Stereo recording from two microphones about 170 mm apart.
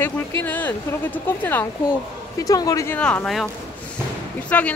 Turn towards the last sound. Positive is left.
turn(degrees=10)  # may be behind; listen again after turning